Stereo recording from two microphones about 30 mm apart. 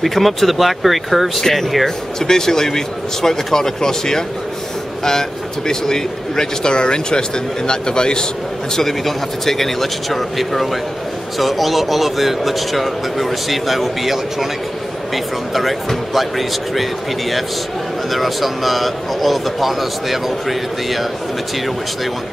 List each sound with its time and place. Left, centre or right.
0.0 s speech: centre
1.4 s speech: centre
5.7 s speech: centre
6.7 s speech: left
8.8 s speech: centre
18.1 s speech: centre